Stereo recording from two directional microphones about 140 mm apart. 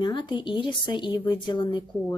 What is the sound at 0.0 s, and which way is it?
Speech, 30° left (ahead or behind).